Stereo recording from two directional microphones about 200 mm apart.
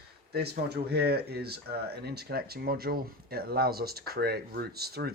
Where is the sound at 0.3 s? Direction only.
55° right (ahead or behind).